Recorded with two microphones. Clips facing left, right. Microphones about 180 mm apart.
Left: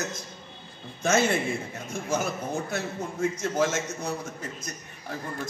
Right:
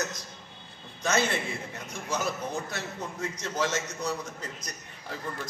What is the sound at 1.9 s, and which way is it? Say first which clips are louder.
A man's voice: left 3 dB; 50° left (ahead or behind).